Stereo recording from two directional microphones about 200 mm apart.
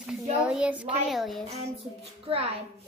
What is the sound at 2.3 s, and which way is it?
Speech, 25° right (ahead or behind).